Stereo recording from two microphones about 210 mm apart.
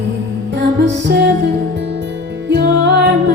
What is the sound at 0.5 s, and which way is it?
Music, 55° right (ahead or behind).